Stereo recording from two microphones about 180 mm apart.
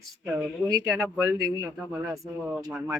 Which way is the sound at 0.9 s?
10° right (ahead or behind).